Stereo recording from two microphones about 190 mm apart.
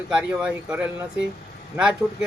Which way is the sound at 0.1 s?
5° right (ahead or behind).